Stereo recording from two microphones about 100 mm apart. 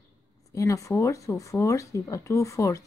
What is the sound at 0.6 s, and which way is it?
Speech, 30° left (ahead or behind).